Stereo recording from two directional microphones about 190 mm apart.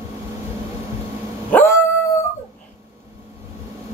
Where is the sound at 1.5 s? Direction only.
10° left (ahead or behind).